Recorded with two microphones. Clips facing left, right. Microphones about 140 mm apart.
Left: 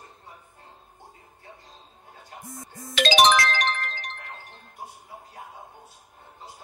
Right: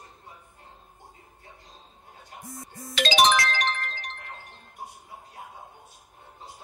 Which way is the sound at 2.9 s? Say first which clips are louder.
Left 2 dB; 80° left.